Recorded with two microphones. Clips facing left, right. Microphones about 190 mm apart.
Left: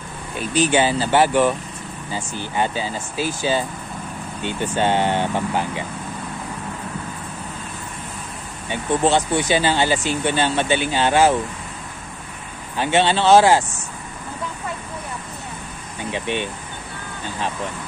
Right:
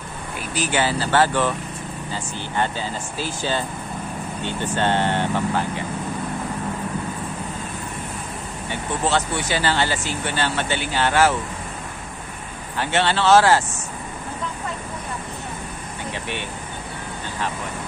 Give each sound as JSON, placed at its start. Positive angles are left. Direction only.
{"t": 0.5, "sound": "speech", "side_deg": 20}
{"t": 9.0, "sound": "speech", "side_deg": 15}
{"t": 12.7, "sound": "speech", "side_deg": 15}
{"t": 16.1, "sound": "speech", "side_deg": 20}